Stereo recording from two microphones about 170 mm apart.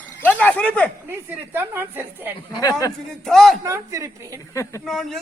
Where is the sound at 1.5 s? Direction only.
10° right (ahead or behind).